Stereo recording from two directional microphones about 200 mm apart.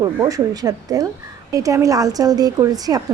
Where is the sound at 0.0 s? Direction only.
20° right (ahead or behind).